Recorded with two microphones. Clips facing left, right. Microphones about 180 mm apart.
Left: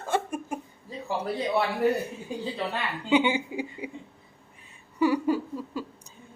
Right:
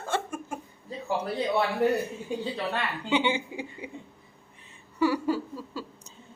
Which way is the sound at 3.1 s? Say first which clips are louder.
Left 4 dB; 15° left (ahead or behind).